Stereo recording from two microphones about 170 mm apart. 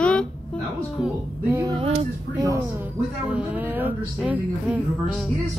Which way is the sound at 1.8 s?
40° right (ahead or behind).